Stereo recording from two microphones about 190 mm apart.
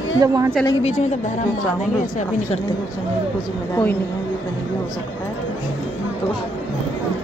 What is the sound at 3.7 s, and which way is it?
Speech, 10° left (ahead or behind).